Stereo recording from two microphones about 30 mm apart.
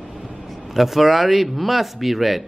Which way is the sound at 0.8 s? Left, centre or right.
Centre.